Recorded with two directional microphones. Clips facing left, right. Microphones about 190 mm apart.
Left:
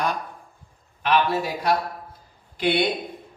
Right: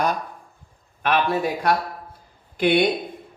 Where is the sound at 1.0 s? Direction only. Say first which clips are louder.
Even; 55° right (ahead or behind).